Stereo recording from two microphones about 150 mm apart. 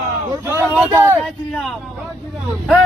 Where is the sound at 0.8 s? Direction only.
15° right (ahead or behind).